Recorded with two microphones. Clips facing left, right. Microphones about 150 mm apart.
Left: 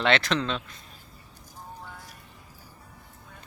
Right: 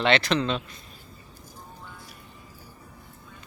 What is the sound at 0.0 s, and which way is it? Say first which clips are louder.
Speech: right 2 dB; centre (ahead or behind).